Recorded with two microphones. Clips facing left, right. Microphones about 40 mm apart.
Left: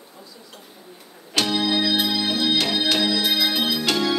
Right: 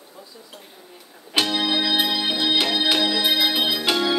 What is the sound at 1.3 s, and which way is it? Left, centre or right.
Organ, centre.